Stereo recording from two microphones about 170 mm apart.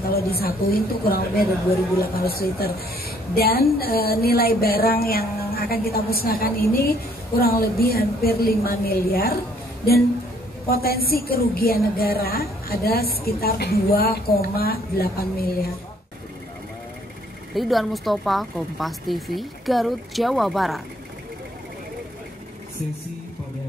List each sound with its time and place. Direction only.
0.1 s a woman's voice: 65° left (ahead or behind)
10.7 s a woman's voice: 60° left (ahead or behind)
17.6 s a woman's voice: centre (ahead or behind)